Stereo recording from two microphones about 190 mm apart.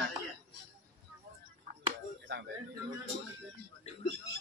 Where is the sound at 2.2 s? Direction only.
60° right (ahead or behind).